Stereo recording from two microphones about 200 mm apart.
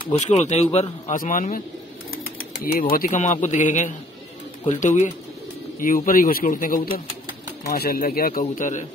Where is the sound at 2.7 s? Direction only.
45° left (ahead or behind).